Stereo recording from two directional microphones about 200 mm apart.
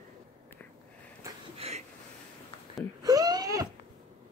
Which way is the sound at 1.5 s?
30° right (ahead or behind).